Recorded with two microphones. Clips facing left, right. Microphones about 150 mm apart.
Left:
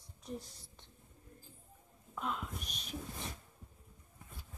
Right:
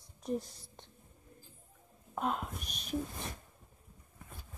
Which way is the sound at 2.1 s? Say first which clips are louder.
Right 5 dB; 50° right (ahead or behind).